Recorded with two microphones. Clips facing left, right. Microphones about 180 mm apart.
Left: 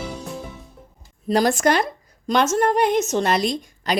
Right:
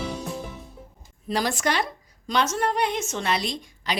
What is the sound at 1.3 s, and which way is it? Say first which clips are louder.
A woman's voice: left 7 dB; 45° left (ahead or behind).